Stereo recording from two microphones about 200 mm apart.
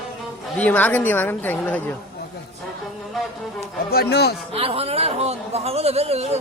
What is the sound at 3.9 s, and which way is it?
Speech, 55° left (ahead or behind).